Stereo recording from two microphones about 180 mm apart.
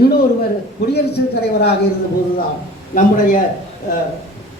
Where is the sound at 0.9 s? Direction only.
60° left (ahead or behind).